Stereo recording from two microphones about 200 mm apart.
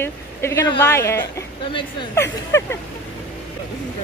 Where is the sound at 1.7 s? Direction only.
25° left (ahead or behind).